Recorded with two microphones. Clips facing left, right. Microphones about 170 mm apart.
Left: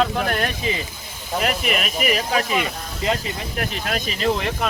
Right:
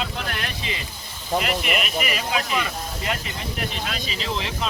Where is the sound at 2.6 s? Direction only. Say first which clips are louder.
Left 2 dB; 30° left (ahead or behind).